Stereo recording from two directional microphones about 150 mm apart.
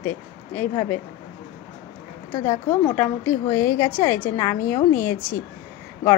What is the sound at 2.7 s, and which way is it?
A woman's voice, 15° left (ahead or behind).